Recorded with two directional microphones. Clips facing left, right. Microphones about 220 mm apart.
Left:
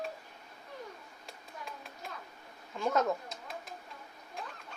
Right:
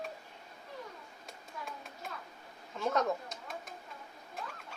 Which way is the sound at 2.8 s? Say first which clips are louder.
Left 1 dB; centre (ahead or behind).